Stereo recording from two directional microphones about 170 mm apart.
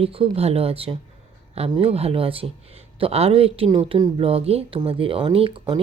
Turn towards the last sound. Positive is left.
turn(degrees=-30)  # may be behind; listen again after turning